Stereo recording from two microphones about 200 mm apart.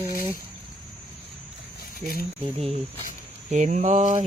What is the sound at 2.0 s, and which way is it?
Speech, 50° right (ahead or behind).